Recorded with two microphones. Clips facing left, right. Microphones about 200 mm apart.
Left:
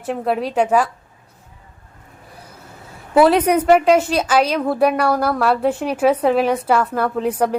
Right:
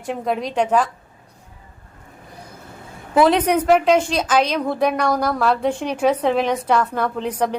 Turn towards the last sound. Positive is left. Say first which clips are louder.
# left 3 dB
turn(degrees=5)  # may be behind; listen again after turning